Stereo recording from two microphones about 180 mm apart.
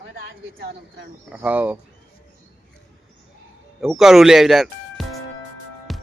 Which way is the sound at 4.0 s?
Centre (ahead or behind).